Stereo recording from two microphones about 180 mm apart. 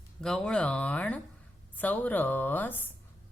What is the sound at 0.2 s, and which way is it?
A woman's voice, 5° left (ahead or behind).